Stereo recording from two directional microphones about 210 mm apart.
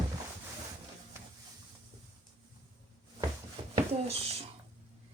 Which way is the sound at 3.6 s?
25° right (ahead or behind).